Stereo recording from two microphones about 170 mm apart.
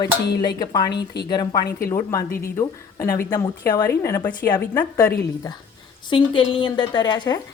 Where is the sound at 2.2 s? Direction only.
60° left (ahead or behind).